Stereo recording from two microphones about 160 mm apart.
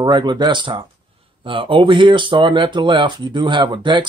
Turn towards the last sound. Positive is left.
turn(degrees=-30)  # may be behind; listen again after turning